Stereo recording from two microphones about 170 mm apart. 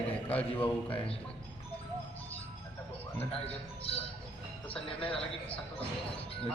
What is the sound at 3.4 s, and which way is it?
Speech, 35° left (ahead or behind).